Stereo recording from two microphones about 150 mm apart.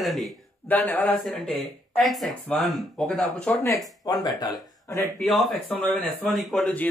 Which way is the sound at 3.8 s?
25° left (ahead or behind).